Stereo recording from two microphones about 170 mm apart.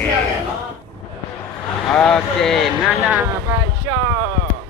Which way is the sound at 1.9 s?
5° left (ahead or behind).